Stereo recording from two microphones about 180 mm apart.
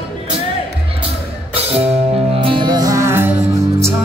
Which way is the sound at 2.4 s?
25° right (ahead or behind).